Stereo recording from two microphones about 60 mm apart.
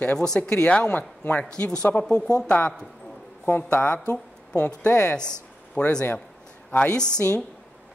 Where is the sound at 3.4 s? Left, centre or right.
Left.